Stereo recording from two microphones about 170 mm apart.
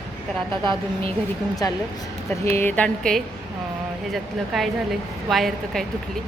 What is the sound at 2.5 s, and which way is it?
A woman's voice, 10° left (ahead or behind).